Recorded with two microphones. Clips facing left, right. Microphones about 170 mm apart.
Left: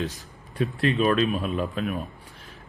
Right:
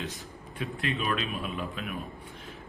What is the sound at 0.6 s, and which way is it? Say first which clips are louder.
A man's voice: left 9 dB; 40° left (ahead or behind).